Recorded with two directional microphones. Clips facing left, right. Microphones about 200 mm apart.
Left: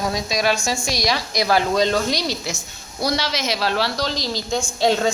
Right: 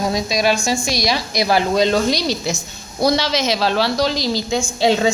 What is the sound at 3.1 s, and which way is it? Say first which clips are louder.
Speech: right 5 dB; 90° right.